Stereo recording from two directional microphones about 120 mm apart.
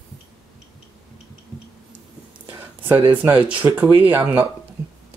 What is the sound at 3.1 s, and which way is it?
Speech, 15° right (ahead or behind).